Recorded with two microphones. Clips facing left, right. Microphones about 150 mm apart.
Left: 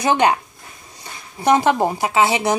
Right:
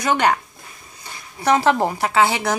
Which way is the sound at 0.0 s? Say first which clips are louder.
Left 2 dB; 20° left (ahead or behind).